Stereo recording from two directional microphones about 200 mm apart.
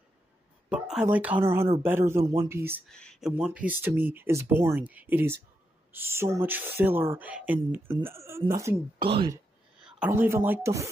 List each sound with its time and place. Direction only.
0.7 s a woman's voice: 5° right (ahead or behind)
2.9 s speech: 5° left (ahead or behind); by 8.8 s 15° right (ahead or behind)
9.0 s speech: 25° right (ahead or behind)
9.8 s speech: 5° right (ahead or behind)